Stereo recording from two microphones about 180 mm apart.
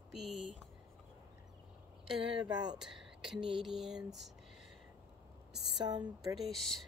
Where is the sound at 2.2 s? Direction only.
30° right (ahead or behind).